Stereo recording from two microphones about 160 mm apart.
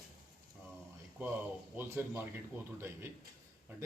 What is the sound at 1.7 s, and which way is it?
Speech, 15° right (ahead or behind).